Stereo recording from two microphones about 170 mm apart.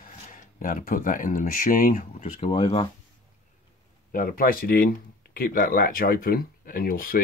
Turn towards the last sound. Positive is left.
turn(degrees=55)  # may be behind; listen again after turning